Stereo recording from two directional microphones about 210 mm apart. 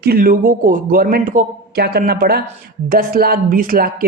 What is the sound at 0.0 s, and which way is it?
Speech, 45° right (ahead or behind).